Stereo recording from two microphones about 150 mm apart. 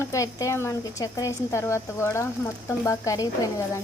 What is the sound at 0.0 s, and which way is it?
A woman's voice, 20° left (ahead or behind).